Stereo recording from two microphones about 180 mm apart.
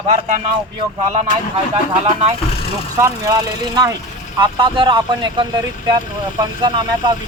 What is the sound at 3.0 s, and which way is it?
Speech, 20° right (ahead or behind).